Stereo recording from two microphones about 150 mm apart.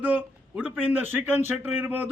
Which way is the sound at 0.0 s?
10° right (ahead or behind).